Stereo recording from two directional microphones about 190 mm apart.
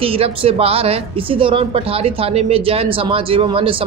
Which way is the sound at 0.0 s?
30° right (ahead or behind).